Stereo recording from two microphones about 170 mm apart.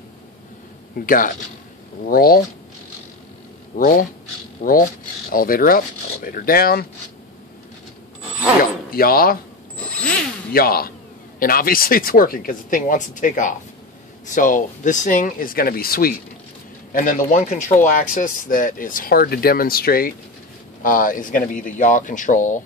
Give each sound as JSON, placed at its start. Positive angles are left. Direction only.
{"t": 0.9, "sound": "speech", "side_deg": 55}
{"t": 3.7, "sound": "speech", "side_deg": 55}
{"t": 8.9, "sound": "speech", "side_deg": 60}
{"t": 9.8, "sound": "a sound", "side_deg": 10}
{"t": 10.5, "sound": "speech", "side_deg": 60}